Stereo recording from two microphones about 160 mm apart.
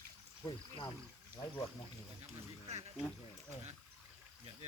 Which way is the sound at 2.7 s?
45° right (ahead or behind).